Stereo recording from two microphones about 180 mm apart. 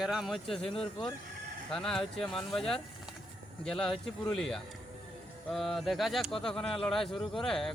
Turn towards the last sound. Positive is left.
turn(degrees=0)  # may be behind; listen again after turning